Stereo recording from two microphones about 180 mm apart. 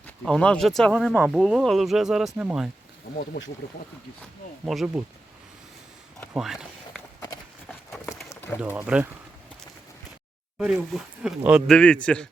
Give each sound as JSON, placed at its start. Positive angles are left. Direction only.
{"t": 0.0, "sound": "speech", "side_deg": 5}
{"t": 4.2, "sound": "speech", "side_deg": 0}
{"t": 6.3, "sound": "a sound", "side_deg": 0}
{"t": 7.9, "sound": "run", "side_deg": 10}
{"t": 8.6, "sound": "speech", "side_deg": -10}
{"t": 10.6, "sound": "speech", "side_deg": -5}
{"t": 11.7, "sound": "speech", "side_deg": 5}